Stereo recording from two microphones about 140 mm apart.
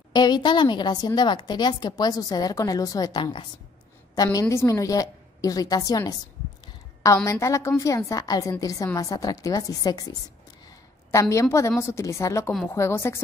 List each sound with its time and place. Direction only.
0.1 s a woman's voice: 30° left (ahead or behind)
7.2 s a woman's voice: 20° left (ahead or behind)